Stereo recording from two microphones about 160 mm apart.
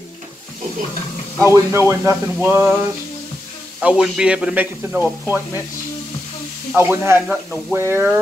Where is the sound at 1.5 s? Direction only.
15° right (ahead or behind).